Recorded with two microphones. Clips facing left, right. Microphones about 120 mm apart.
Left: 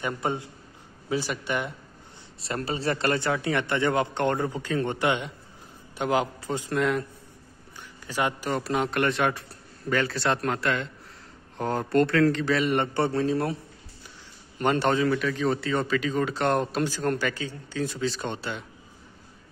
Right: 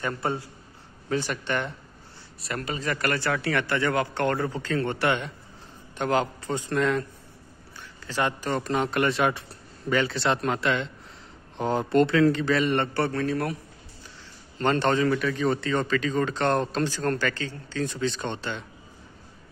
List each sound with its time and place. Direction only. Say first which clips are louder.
0.0 s speech: even; 15° left (ahead or behind)
1.0 s a man's voice: right 1 dB; 10° left (ahead or behind)
2.4 s a man's voice: left 2 dB; 30° left (ahead or behind); by 7.1 s 5° left (ahead or behind)
8.1 s speech: even; 10° left (ahead or behind)
12.7 s speech: left 1 dB; 20° left (ahead or behind)
14.6 s a man's voice: even; 10° left (ahead or behind)